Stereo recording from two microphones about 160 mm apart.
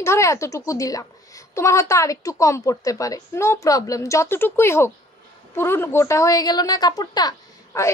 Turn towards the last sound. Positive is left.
turn(degrees=20)  # may be behind; listen again after turning